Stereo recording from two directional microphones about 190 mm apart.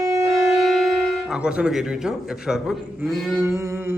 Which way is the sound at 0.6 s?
Centre (ahead or behind).